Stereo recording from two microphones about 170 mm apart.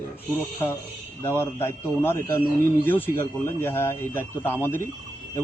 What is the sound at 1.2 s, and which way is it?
Speech, 15° left (ahead or behind).